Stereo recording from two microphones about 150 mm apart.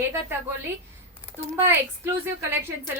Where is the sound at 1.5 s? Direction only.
15° right (ahead or behind).